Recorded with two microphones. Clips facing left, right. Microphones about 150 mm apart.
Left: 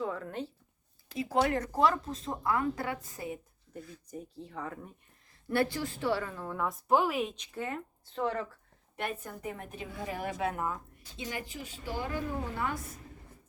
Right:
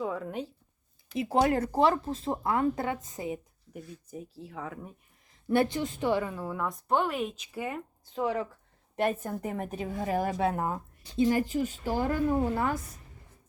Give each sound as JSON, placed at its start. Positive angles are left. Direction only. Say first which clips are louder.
{"t": 0.0, "sound": "speech", "louder": "right 2 dB", "side_deg": -10}
{"t": 1.1, "sound": "speech", "louder": "right 3 dB", "side_deg": -25}
{"t": 4.1, "sound": "speech", "louder": "even", "side_deg": -5}
{"t": 5.5, "sound": "speech", "louder": "right 4 dB", "side_deg": -20}
{"t": 6.6, "sound": "speech", "louder": "left 1 dB", "side_deg": 0}
{"t": 9.0, "sound": "a woman's voice", "louder": "right 8 dB", "side_deg": -45}
{"t": 11.2, "sound": "a woman's voice", "louder": "right 14 dB", "side_deg": -45}